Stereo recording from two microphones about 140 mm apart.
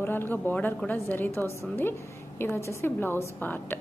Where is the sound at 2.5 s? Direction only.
15° left (ahead or behind).